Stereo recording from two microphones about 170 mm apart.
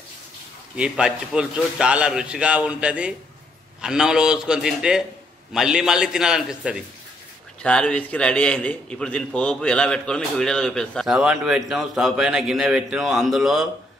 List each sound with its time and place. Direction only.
0.7 s a man's voice: 5° right (ahead or behind)
7.6 s a man's voice: 5° left (ahead or behind)